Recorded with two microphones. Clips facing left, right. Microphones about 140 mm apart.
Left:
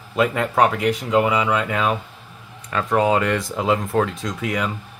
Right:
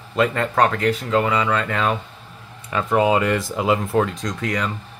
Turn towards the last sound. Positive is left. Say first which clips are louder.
# even
turn(degrees=5)  # may be behind; listen again after turning